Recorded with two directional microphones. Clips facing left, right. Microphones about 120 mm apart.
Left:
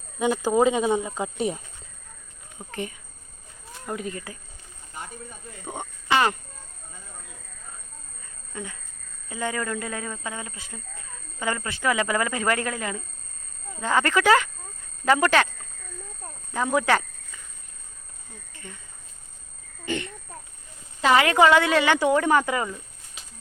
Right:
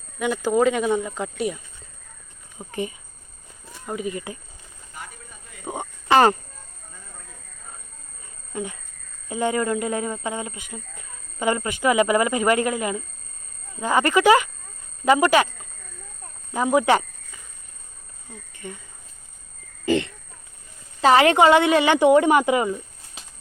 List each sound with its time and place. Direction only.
0.4 s speech: 20° left (ahead or behind)
1.4 s speech: 30° left (ahead or behind)
2.6 s speech: 15° right (ahead or behind)
3.8 s speech: 5° right (ahead or behind)
4.1 s a woman's voice: 20° right (ahead or behind)
5.6 s cricket: 10° right (ahead or behind)
6.1 s speech: 40° right (ahead or behind)
8.5 s a woman's voice: 20° right (ahead or behind)
16.5 s cricket: 10° right (ahead or behind)
18.5 s cricket: 20° right (ahead or behind)
19.8 s a woman's voice: 35° right (ahead or behind)
21.3 s a woman's voice: 20° right (ahead or behind)